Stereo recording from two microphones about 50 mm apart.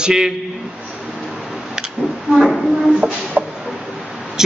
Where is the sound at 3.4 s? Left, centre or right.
Right.